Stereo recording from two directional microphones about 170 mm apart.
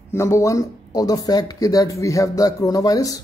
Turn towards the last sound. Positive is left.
turn(degrees=20)  # may be behind; listen again after turning